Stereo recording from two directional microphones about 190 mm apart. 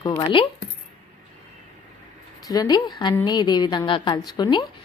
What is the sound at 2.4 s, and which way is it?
A woman's voice, 20° left (ahead or behind).